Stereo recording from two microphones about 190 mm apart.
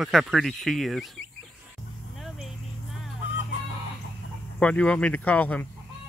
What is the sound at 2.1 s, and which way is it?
Vehicle, centre (ahead or behind).